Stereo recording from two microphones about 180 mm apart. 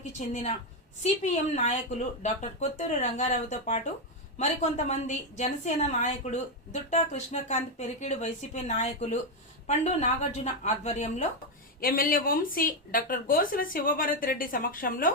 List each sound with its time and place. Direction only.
0.0 s a woman's voice: 40° left (ahead or behind)
11.8 s speech: 55° left (ahead or behind)